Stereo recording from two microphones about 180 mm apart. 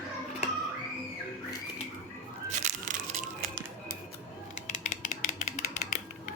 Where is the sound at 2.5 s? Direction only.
45° right (ahead or behind).